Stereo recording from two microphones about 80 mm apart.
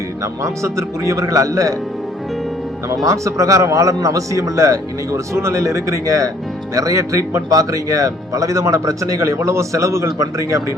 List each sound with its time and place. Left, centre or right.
0.4 s a man's voice: right
2.9 s speech: right